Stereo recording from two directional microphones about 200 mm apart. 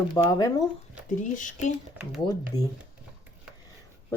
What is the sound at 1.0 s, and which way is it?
Speech, 40° left (ahead or behind).